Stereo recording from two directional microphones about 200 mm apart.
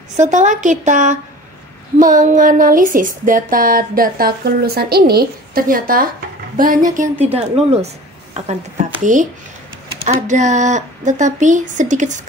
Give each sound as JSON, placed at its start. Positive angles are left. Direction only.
{"t": 0.2, "sound": "a woman's voice", "side_deg": -40}
{"t": 9.0, "sound": "speech", "side_deg": -40}